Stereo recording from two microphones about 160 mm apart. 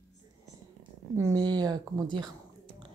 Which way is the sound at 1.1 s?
20° right (ahead or behind).